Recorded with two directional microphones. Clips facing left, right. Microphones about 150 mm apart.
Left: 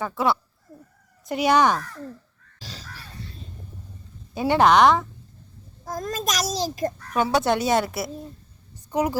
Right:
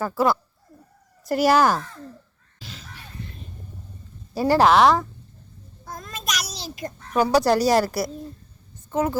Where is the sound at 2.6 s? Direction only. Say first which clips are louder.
Left 1 dB; 35° left (ahead or behind).